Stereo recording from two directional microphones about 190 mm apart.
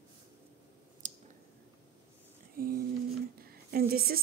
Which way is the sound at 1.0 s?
40° right (ahead or behind).